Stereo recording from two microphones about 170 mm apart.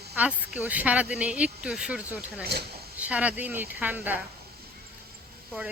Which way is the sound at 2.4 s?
70° right (ahead or behind).